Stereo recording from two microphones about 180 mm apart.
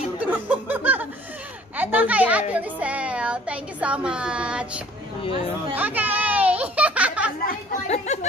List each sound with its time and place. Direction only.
0.2 s speech: 10° right (ahead or behind)
5.8 s a sound: 10° right (ahead or behind)
7.4 s speech: 40° left (ahead or behind)